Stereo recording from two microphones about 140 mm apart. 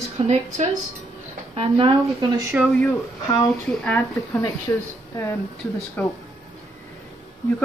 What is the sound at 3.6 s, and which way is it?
Speech, 10° left (ahead or behind).